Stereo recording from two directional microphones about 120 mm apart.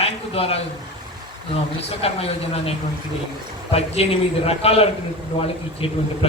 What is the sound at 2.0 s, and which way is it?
A man's voice, 55° left (ahead or behind).